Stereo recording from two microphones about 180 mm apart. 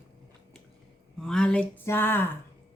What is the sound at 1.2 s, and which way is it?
Speech, 5° left (ahead or behind).